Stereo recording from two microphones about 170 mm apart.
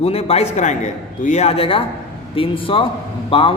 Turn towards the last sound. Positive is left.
turn(degrees=30)  # may be behind; listen again after turning